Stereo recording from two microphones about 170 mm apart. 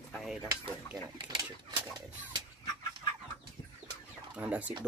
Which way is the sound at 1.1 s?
25° right (ahead or behind).